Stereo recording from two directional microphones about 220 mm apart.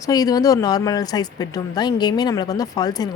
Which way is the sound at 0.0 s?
15° left (ahead or behind).